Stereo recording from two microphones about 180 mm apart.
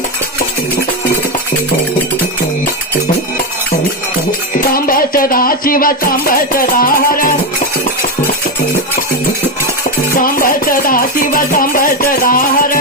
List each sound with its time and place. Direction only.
4.7 s music: 50° left (ahead or behind)
10.2 s music: 50° left (ahead or behind)